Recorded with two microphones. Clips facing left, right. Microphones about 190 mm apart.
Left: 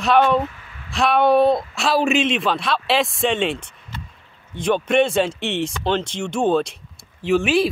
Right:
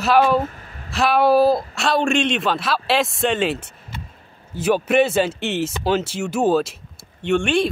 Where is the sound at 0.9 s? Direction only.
Centre (ahead or behind).